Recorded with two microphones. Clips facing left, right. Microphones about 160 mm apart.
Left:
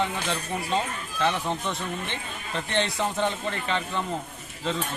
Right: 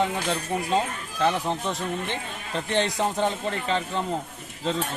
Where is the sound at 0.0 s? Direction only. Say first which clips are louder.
Right 3 dB; 40° right (ahead or behind).